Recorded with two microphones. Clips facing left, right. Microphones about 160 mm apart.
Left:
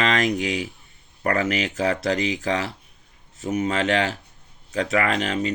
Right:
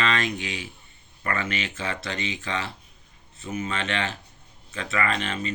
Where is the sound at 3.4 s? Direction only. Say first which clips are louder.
Left 7 dB; 80° left.